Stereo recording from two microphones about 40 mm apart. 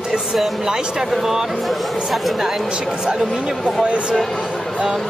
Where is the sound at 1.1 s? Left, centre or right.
Centre.